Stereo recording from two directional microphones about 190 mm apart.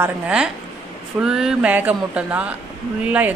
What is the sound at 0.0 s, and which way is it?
Speech, 5° right (ahead or behind).